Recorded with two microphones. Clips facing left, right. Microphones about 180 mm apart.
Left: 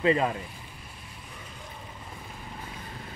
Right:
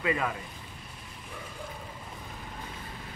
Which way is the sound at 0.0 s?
25° left (ahead or behind).